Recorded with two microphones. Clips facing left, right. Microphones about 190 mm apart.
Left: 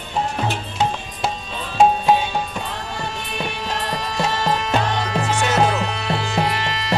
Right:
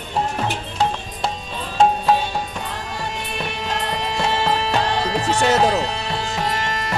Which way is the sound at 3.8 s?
25° right (ahead or behind).